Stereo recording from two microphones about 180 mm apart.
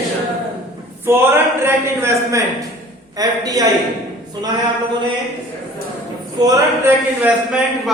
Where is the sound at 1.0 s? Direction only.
10° right (ahead or behind).